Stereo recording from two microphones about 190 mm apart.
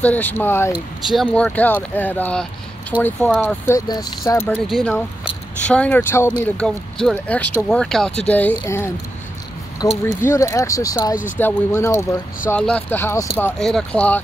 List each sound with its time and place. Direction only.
0.0 s speech: 10° left (ahead or behind)
0.7 s speech: centre (ahead or behind)
4.6 s speech: centre (ahead or behind)
13.4 s speech: centre (ahead or behind)